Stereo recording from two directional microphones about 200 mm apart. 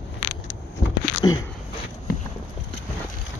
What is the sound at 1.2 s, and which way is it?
Speech, 20° left (ahead or behind).